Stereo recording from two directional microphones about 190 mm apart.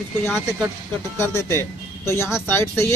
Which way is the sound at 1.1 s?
15° left (ahead or behind).